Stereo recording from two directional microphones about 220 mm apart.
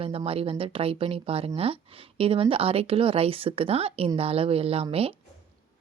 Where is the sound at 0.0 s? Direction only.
25° right (ahead or behind).